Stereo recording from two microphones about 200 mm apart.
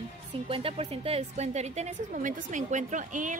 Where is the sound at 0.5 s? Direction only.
25° right (ahead or behind).